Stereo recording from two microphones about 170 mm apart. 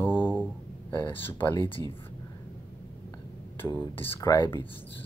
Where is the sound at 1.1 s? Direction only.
10° left (ahead or behind).